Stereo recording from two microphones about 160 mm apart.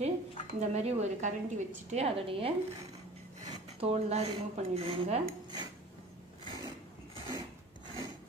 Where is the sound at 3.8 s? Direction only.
40° right (ahead or behind).